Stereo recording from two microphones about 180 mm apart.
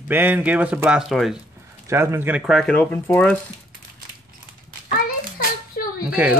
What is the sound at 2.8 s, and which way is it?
Speech, 10° left (ahead or behind).